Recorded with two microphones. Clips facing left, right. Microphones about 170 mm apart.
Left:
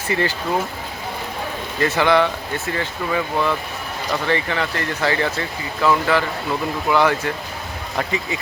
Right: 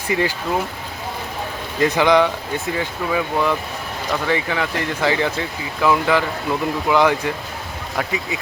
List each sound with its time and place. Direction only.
0.1 s speech: 10° right (ahead or behind)
1.8 s speech: 15° right (ahead or behind)
7.9 s speech: centre (ahead or behind)